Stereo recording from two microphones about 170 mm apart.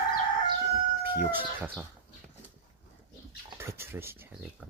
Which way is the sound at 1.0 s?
10° right (ahead or behind).